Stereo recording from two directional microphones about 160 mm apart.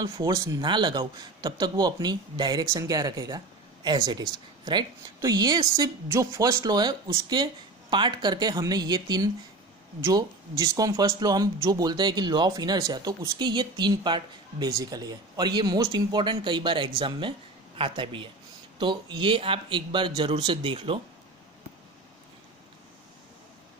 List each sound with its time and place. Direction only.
0.0 s speech: 20° right (ahead or behind)